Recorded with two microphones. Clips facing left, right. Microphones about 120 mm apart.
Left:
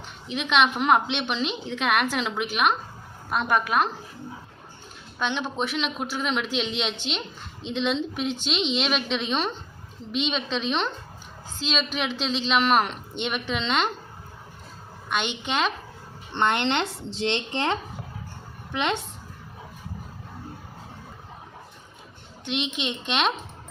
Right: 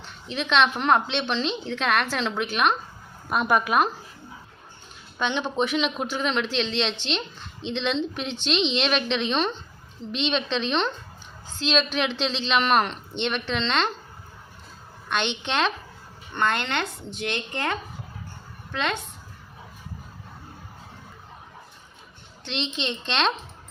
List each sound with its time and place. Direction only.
0.0 s a woman's voice: 10° left (ahead or behind)
3.2 s speech: 5° right (ahead or behind)
5.2 s a woman's voice: centre (ahead or behind)
15.1 s speech: 5° left (ahead or behind)
16.3 s speech: 20° left (ahead or behind)
22.4 s a woman's voice: 10° left (ahead or behind)